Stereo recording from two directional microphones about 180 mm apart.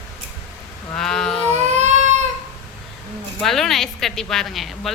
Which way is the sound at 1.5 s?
40° right (ahead or behind).